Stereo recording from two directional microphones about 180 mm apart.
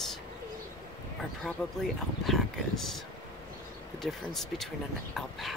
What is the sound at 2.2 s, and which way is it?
Speech, centre (ahead or behind).